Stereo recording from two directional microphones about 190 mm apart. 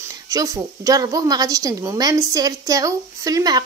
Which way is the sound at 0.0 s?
15° right (ahead or behind).